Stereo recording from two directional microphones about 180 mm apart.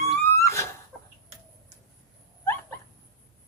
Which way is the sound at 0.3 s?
15° left (ahead or behind).